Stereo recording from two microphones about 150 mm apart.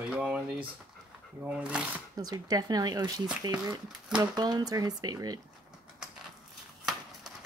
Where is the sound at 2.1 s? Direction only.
25° right (ahead or behind).